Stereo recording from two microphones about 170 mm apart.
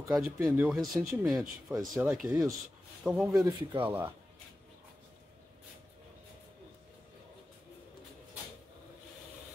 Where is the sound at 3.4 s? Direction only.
30° right (ahead or behind).